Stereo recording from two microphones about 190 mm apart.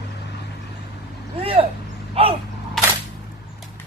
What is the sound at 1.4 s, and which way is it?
Vehicle, 30° right (ahead or behind).